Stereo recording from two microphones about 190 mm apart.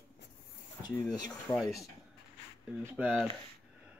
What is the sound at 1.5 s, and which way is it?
Speech, 20° left (ahead or behind).